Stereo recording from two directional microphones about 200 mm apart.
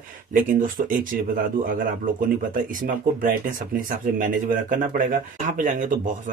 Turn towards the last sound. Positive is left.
turn(degrees=-40)  # may be behind; listen again after turning